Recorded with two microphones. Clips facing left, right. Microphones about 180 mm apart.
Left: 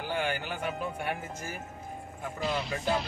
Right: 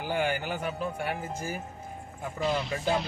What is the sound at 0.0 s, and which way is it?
Music, 45° right (ahead or behind).